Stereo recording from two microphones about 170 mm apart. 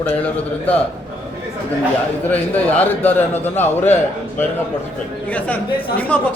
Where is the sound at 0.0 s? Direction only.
10° left (ahead or behind).